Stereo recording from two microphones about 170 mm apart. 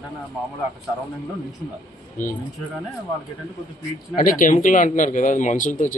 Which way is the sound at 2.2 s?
55° left (ahead or behind).